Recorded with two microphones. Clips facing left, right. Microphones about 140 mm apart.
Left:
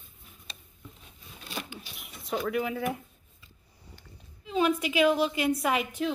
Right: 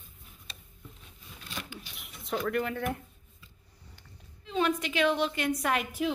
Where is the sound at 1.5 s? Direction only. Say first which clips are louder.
Left 3 dB; 25° left (ahead or behind).